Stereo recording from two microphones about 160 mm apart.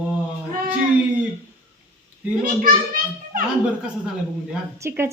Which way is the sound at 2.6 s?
60° right (ahead or behind).